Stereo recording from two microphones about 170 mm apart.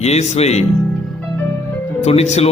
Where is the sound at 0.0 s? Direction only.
40° left (ahead or behind).